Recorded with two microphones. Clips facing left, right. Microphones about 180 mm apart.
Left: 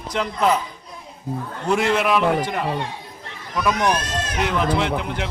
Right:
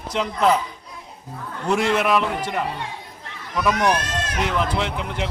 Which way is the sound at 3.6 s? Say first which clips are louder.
Even; centre (ahead or behind).